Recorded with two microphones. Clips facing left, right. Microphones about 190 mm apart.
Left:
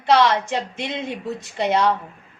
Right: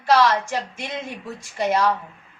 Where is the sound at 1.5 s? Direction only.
20° left (ahead or behind).